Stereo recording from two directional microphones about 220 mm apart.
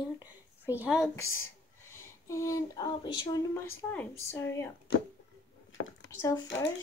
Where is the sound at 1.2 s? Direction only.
70° left (ahead or behind).